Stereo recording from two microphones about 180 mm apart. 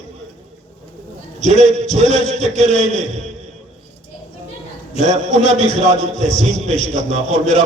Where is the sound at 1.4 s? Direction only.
40° right (ahead or behind).